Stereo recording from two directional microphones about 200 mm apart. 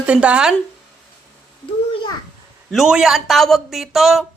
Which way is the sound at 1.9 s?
25° left (ahead or behind).